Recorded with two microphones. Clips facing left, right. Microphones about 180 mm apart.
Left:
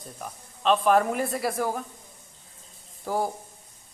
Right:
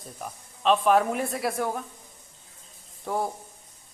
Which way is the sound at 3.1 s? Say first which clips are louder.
Left 1 dB; 5° left (ahead or behind).